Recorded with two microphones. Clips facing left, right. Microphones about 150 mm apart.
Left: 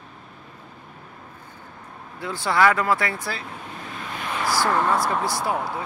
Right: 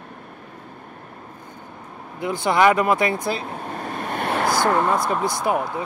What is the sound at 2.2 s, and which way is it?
Speech, 20° right (ahead or behind).